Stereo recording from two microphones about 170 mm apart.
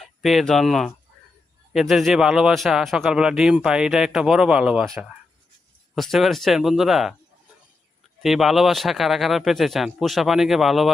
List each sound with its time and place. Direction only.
0.0 s speech: centre (ahead or behind)
5.9 s speech: centre (ahead or behind)
8.2 s speech: centre (ahead or behind)